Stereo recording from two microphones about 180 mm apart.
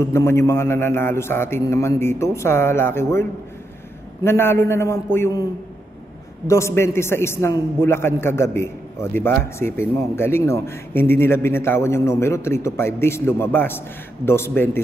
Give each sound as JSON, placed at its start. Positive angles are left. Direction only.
{"t": 0.0, "sound": "a man's voice", "side_deg": 15}